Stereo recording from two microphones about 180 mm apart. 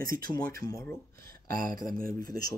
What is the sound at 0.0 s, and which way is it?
Speech, 50° right (ahead or behind).